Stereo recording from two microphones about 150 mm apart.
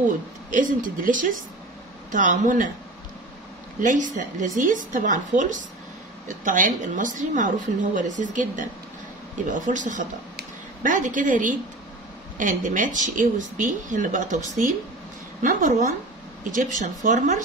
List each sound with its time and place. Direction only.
0.5 s a woman's voice: 60° right (ahead or behind)
3.8 s a woman's voice: 55° right (ahead or behind)
15.4 s a woman's voice: 65° right (ahead or behind)